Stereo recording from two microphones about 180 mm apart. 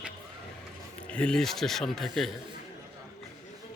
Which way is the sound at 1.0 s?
5° left (ahead or behind).